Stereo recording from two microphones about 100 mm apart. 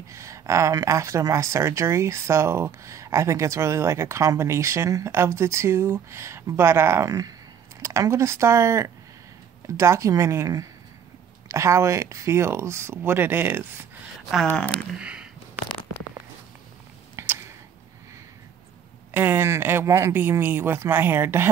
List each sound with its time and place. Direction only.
0.1 s speech: 30° right (ahead or behind)
15.0 s speech: 10° right (ahead or behind)
19.1 s speech: 20° right (ahead or behind)